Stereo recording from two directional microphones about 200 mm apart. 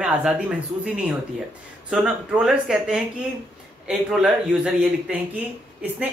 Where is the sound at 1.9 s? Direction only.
5° right (ahead or behind).